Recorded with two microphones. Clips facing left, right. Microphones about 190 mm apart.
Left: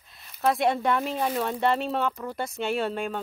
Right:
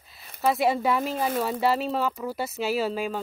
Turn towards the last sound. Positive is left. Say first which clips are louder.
# right 1 dB
turn(degrees=0)  # may be behind; listen again after turning